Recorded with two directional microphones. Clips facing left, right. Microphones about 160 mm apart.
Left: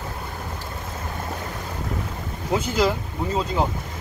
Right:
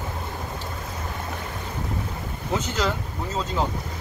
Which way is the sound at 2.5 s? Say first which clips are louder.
Left 4 dB; 10° left (ahead or behind).